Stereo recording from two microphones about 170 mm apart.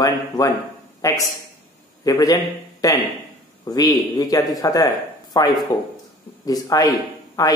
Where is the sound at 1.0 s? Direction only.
20° left (ahead or behind).